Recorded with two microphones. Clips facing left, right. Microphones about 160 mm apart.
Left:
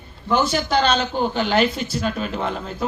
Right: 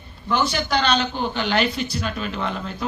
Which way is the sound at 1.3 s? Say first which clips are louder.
Left 3 dB; 45° left (ahead or behind).